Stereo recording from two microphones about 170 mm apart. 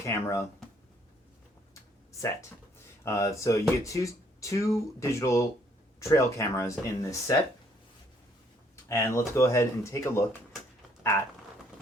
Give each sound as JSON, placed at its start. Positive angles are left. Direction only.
{"t": 0.0, "sound": "speech", "side_deg": 15}
{"t": 3.0, "sound": "speech", "side_deg": 15}
{"t": 8.7, "sound": "speech", "side_deg": 15}